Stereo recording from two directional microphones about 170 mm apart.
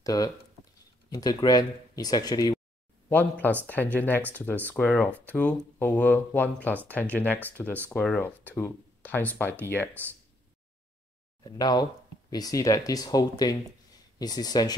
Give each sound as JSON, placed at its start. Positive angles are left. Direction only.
{"t": 0.0, "sound": "speech", "side_deg": 20}
{"t": 3.1, "sound": "speech", "side_deg": 10}
{"t": 11.4, "sound": "speech", "side_deg": 25}